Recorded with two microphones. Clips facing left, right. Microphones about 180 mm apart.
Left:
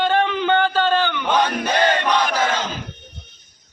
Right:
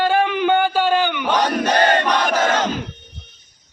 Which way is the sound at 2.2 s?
45° right (ahead or behind).